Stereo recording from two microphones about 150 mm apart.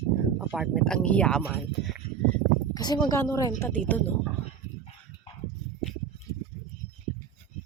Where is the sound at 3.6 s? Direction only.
10° left (ahead or behind).